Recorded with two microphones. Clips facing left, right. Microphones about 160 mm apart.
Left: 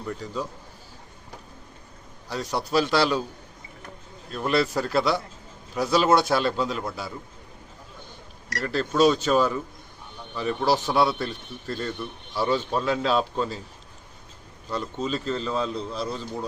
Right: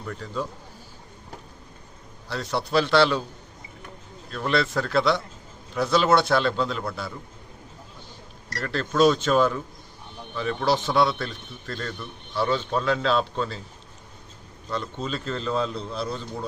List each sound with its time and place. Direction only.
0.1 s a man's voice: 10° left (ahead or behind)
2.3 s a man's voice: 10° left (ahead or behind)
4.3 s a man's voice: 5° left (ahead or behind)
8.5 s a man's voice: 5° left (ahead or behind)
14.7 s a man's voice: 5° left (ahead or behind)